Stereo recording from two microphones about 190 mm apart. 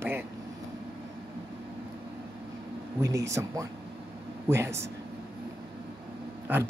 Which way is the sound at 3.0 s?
15° right (ahead or behind).